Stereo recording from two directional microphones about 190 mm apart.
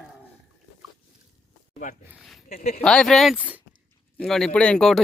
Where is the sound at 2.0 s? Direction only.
5° right (ahead or behind).